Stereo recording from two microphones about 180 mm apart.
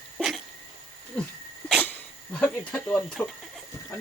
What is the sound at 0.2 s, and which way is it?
Dog, centre (ahead or behind).